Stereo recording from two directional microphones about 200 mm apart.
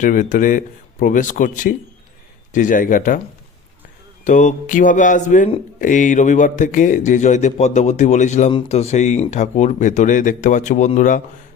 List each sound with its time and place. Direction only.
0.0 s speech: 40° left (ahead or behind)
4.2 s speech: 40° left (ahead or behind)